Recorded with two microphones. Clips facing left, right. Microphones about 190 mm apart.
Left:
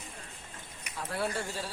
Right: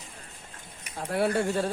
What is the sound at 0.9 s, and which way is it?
Speech, 60° right (ahead or behind).